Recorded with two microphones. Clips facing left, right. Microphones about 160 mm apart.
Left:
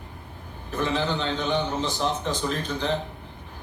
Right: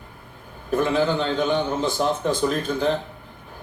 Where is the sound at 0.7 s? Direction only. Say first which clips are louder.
Right 6 dB; 50° right (ahead or behind).